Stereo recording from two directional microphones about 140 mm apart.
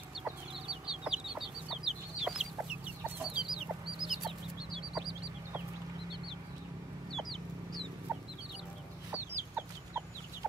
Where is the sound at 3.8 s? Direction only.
35° right (ahead or behind).